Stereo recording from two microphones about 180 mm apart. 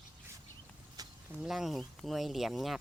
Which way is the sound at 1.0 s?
20° right (ahead or behind).